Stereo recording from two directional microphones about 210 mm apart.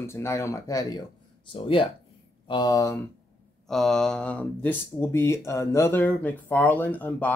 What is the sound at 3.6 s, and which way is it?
Speech, centre (ahead or behind).